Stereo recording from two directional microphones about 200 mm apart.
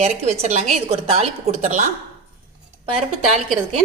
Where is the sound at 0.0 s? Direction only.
35° right (ahead or behind).